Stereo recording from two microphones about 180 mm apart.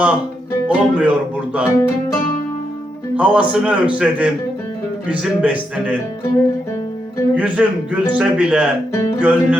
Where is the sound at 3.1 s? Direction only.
10° right (ahead or behind).